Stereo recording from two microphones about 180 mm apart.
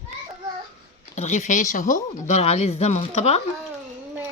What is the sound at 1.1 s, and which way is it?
Speech, 40° left (ahead or behind).